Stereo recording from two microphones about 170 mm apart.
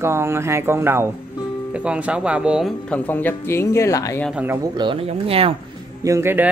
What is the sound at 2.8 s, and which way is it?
Speech, 10° left (ahead or behind).